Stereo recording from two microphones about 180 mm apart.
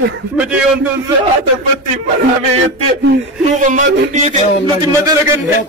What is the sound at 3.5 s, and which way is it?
Speech, 45° right (ahead or behind).